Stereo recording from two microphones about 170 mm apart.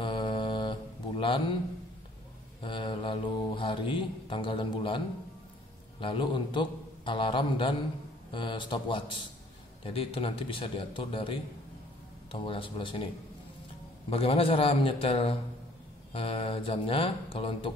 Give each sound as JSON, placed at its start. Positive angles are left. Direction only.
{"t": 0.0, "sound": "mantra", "side_deg": 30}
{"t": 2.6, "sound": "mantra", "side_deg": 30}
{"t": 5.9, "sound": "a man's voice", "side_deg": 30}
{"t": 8.3, "sound": "mantra", "side_deg": 30}
{"t": 9.8, "sound": "speech", "side_deg": 30}
{"t": 14.1, "sound": "speech", "side_deg": 35}